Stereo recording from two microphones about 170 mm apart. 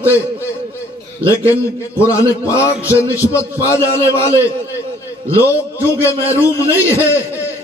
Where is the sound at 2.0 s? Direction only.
15° left (ahead or behind).